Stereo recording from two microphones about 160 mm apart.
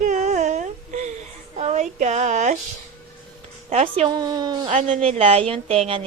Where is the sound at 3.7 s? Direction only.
40° right (ahead or behind).